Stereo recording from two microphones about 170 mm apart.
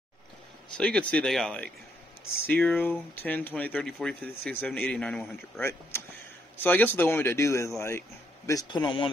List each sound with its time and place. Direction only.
0.7 s speech: 5° left (ahead or behind); by 9.1 s 30° left (ahead or behind)